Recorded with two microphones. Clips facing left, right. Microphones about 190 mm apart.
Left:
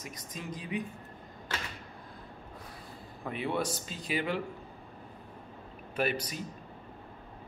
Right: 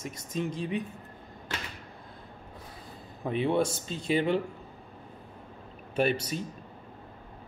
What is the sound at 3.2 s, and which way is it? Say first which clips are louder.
Speech: right 6 dB; 25° right (ahead or behind).